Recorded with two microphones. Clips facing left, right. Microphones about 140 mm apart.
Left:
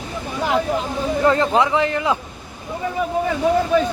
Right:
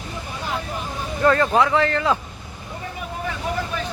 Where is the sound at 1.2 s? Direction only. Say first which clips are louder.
Even; 20° left (ahead or behind).